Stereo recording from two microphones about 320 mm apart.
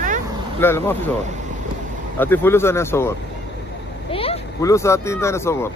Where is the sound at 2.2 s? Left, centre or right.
Centre.